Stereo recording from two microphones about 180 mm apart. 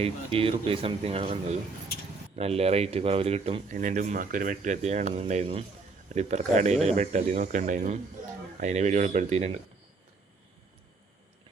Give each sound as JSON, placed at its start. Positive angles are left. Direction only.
{"t": 0.0, "sound": "speech", "side_deg": -30}